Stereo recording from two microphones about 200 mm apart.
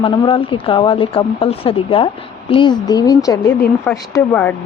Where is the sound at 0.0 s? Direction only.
25° left (ahead or behind).